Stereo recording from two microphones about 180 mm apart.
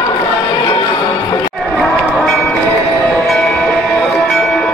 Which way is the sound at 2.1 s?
Centre (ahead or behind).